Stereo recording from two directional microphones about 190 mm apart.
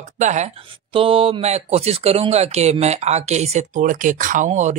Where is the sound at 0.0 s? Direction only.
40° right (ahead or behind).